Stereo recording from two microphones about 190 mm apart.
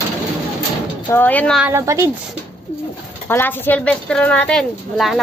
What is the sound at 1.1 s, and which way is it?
Speech, 10° left (ahead or behind).